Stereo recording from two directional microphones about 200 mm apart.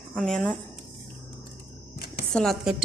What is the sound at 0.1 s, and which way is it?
Speech, centre (ahead or behind).